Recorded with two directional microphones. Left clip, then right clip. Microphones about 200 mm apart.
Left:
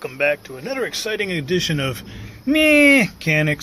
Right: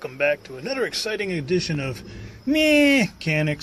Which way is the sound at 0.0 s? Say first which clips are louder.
Left 2 dB; 10° right (ahead or behind).